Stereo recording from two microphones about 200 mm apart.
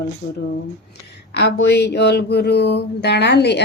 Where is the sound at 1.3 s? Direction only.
55° left (ahead or behind).